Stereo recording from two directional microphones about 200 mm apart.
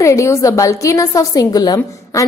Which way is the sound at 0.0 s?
15° left (ahead or behind).